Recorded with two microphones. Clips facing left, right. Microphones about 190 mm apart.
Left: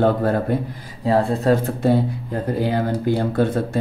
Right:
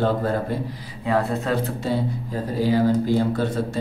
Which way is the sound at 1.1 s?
30° left (ahead or behind).